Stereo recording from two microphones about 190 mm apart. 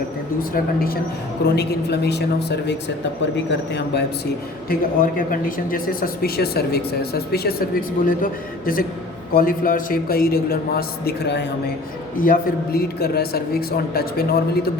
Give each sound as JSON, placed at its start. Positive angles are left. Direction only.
{"t": 0.5, "sound": "a man's voice", "side_deg": 50}
{"t": 4.7, "sound": "a man's voice", "side_deg": 45}
{"t": 12.1, "sound": "a man's voice", "side_deg": 50}